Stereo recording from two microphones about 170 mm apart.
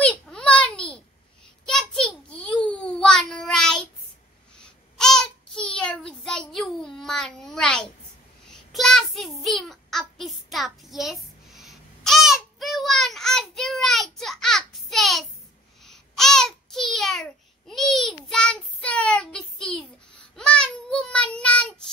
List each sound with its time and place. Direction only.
0.0 s a sound: 5° left (ahead or behind)
4.6 s child singing: 5° left (ahead or behind)
15.8 s babbling: centre (ahead or behind)
20.3 s child singing: 5° left (ahead or behind)